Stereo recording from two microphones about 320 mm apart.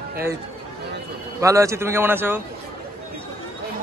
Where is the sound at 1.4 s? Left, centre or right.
Centre.